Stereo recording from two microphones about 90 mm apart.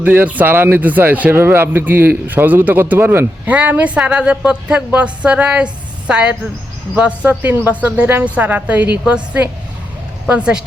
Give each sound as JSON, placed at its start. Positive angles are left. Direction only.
{"t": 0.0, "sound": "a woman's voice", "side_deg": -20}